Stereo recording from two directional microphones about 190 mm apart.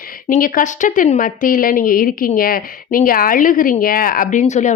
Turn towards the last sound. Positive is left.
turn(degrees=40)  # may be behind; listen again after turning